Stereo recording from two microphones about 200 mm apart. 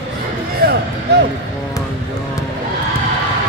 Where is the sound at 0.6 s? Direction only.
50° right (ahead or behind).